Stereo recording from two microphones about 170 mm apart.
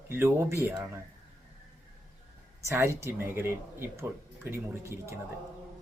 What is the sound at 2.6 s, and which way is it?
Speech, 15° right (ahead or behind).